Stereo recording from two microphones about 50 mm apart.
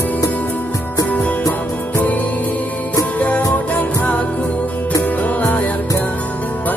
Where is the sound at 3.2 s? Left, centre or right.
Left.